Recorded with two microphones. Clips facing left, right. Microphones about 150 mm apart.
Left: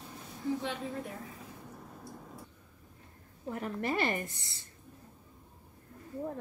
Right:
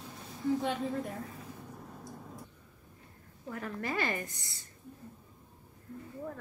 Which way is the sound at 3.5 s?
20° left (ahead or behind).